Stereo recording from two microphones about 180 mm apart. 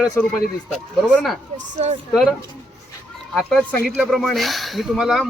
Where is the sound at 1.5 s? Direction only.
40° right (ahead or behind).